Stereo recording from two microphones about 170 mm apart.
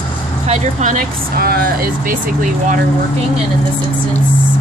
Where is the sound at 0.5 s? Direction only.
45° right (ahead or behind).